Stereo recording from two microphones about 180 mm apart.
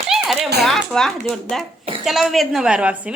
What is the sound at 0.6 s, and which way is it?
A woman's voice, centre (ahead or behind).